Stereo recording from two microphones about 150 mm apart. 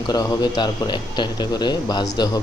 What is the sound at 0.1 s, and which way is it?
A man's voice, 25° left (ahead or behind).